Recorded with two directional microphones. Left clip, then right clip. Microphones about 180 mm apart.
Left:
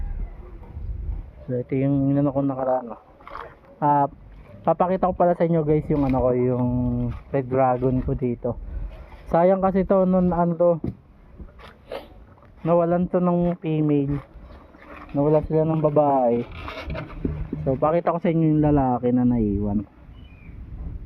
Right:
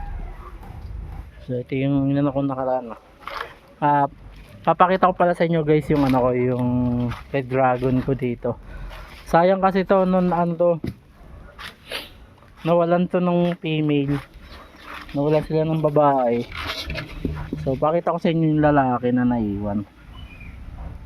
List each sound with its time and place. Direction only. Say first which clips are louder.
1.5 s speech: even; 20° right (ahead or behind)
3.8 s speech: right 1 dB; 15° right (ahead or behind)
6.0 s speech: right 2 dB; 40° right (ahead or behind)
7.8 s speech: right 2 dB; 40° right (ahead or behind)
9.3 s speech: right 2 dB; 10° right (ahead or behind)
10.5 s speech: left 1 dB; centre (ahead or behind)
11.9 s a sound: right 3 dB; 35° right (ahead or behind)
12.6 s speech: right 2 dB; 35° right (ahead or behind)
15.1 s speech: even; 50° right (ahead or behind)
17.7 s speech: even; 40° right (ahead or behind)
18.6 s speech: right 6 dB; 20° right (ahead or behind)